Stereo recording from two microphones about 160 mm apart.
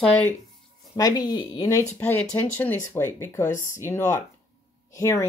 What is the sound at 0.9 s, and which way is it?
Speech, 25° left (ahead or behind).